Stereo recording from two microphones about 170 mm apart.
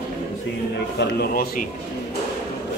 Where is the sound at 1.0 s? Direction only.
65° left (ahead or behind).